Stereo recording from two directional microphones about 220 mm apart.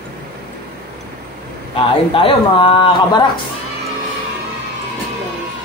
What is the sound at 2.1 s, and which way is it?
A man's voice, 20° left (ahead or behind).